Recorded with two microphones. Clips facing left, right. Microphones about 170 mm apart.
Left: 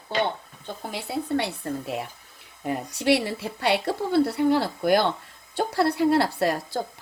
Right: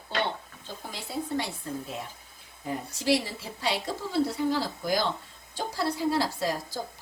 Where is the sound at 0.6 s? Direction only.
65° left (ahead or behind).